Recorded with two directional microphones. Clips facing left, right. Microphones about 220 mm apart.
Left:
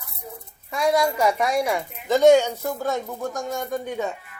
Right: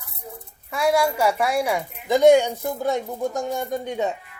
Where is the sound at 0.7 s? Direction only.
10° right (ahead or behind).